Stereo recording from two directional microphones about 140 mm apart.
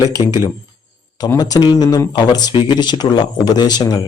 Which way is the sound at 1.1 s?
30° left (ahead or behind).